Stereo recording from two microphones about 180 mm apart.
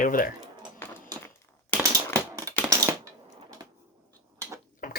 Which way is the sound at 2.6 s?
15° right (ahead or behind).